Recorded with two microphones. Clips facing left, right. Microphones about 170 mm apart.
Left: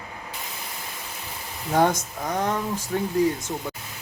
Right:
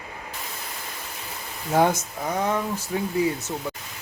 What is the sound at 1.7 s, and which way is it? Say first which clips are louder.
Speech: even; 10° right (ahead or behind).